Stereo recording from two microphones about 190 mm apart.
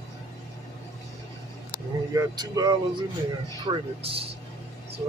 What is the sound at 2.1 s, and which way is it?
Speech, 20° right (ahead or behind).